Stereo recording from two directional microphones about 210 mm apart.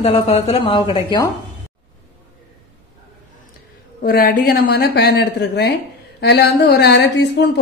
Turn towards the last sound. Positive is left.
turn(degrees=50)  # may be behind; listen again after turning